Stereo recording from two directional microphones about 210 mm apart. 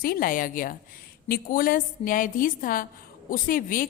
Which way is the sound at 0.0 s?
45° left (ahead or behind).